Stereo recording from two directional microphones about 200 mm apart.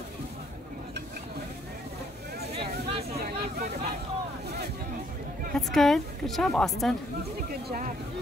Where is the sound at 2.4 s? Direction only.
55° right (ahead or behind).